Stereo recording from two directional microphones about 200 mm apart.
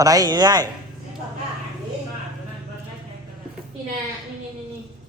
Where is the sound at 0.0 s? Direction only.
20° right (ahead or behind).